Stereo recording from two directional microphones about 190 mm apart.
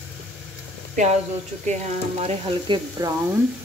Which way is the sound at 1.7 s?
35° right (ahead or behind).